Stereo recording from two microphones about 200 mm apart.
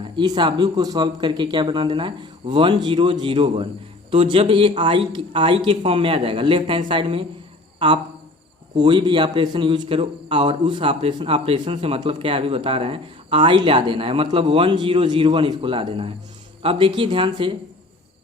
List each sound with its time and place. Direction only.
0.0 s a man's voice: 25° right (ahead or behind)
8.7 s a man's voice: 20° right (ahead or behind)